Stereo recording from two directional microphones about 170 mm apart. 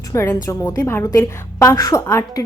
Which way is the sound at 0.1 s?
15° left (ahead or behind).